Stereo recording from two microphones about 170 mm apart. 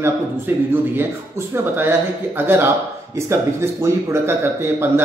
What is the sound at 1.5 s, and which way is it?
Speech, 15° right (ahead or behind).